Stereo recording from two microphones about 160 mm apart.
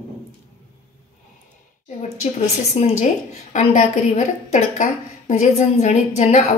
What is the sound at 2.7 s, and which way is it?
A woman's voice, 45° left (ahead or behind).